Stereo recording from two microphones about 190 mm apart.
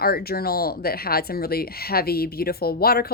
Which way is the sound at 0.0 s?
55° left (ahead or behind).